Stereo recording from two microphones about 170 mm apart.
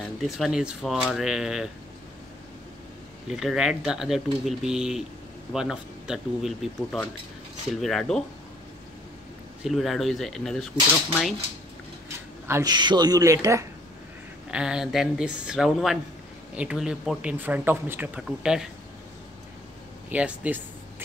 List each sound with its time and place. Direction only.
0.0 s speech: centre (ahead or behind)
3.3 s speech: centre (ahead or behind)
9.6 s speech: centre (ahead or behind)
12.4 s speech: 20° right (ahead or behind)
14.5 s a man's voice: 5° right (ahead or behind)
20.1 s a man's voice: 10° right (ahead or behind)